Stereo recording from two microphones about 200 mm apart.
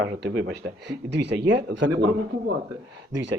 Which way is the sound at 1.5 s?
60° right (ahead or behind).